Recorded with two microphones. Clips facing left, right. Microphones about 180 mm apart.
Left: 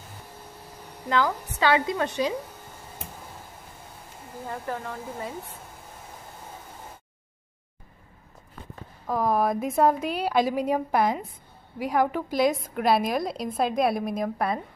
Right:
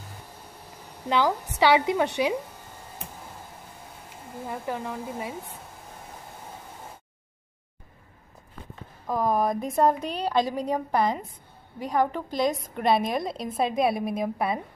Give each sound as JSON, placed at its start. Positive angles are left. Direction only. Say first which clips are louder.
{"t": 1.0, "sound": "a woman's voice", "louder": "right 1 dB", "side_deg": -20}
{"t": 4.5, "sound": "speech", "louder": "right 1 dB", "side_deg": -15}
{"t": 9.0, "sound": "a woman's voice", "louder": "even", "side_deg": 5}